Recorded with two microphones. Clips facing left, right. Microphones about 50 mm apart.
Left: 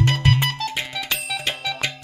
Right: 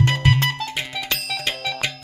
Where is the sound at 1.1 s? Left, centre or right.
Centre.